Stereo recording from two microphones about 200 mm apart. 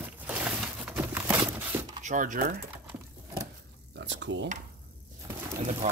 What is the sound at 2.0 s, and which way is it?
Speech, 40° right (ahead or behind).